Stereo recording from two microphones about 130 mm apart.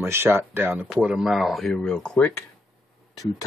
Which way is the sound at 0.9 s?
5° right (ahead or behind).